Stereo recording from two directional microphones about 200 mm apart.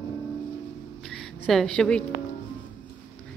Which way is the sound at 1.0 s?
Centre (ahead or behind).